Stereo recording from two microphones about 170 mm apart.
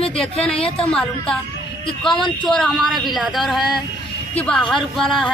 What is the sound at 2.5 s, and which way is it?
Speech, centre (ahead or behind).